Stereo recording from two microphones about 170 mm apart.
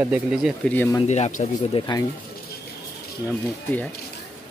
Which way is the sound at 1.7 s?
25° left (ahead or behind).